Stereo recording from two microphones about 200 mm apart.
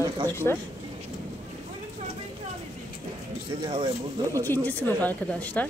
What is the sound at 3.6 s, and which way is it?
Speech, 25° right (ahead or behind).